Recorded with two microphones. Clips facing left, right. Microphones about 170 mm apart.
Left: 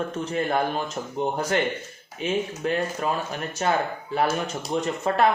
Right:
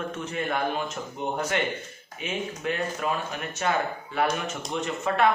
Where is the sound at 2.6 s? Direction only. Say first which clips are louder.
Left 1 dB; 35° left (ahead or behind).